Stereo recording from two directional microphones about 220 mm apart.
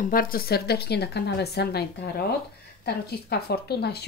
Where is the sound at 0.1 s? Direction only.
40° left (ahead or behind).